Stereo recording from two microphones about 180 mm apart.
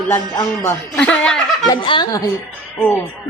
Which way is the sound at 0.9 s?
5° left (ahead or behind).